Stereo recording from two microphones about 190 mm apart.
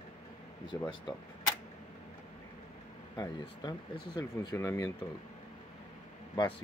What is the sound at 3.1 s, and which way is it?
Speech, 20° left (ahead or behind).